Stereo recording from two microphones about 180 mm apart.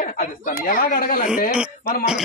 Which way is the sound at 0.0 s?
50° left (ahead or behind).